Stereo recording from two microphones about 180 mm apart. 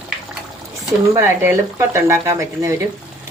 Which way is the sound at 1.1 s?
15° right (ahead or behind).